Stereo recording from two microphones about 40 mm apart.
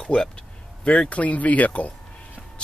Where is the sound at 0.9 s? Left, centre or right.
Left.